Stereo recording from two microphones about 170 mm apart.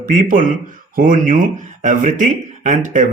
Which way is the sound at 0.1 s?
50° right (ahead or behind).